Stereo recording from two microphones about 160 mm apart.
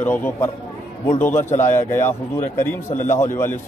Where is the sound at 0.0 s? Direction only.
10° left (ahead or behind).